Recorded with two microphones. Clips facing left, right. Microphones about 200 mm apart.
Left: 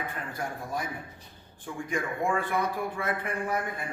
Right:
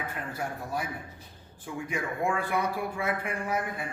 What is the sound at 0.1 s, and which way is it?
Speech, 5° right (ahead or behind).